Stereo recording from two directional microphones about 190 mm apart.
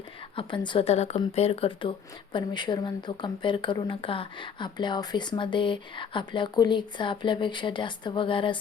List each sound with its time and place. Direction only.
0.3 s speech: 25° left (ahead or behind)